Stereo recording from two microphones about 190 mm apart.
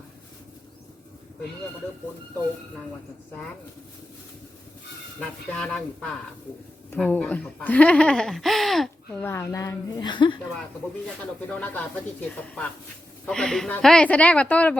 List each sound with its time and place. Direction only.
5.5 s speech: 5° left (ahead or behind)
9.2 s speech: 15° left (ahead or behind)
11.2 s speech: 10° left (ahead or behind)